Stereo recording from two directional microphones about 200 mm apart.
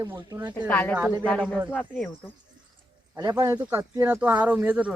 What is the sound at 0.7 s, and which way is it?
Speech, 10° left (ahead or behind).